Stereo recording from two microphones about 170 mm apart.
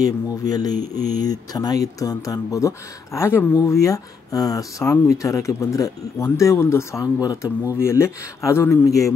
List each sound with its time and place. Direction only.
0.0 s speech: 20° left (ahead or behind)